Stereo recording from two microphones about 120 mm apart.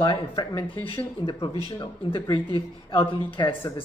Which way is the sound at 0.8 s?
45° left (ahead or behind).